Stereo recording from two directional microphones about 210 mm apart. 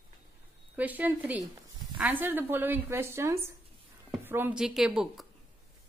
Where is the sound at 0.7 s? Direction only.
10° right (ahead or behind).